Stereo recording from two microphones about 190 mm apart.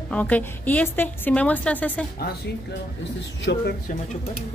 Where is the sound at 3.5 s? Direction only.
60° left (ahead or behind).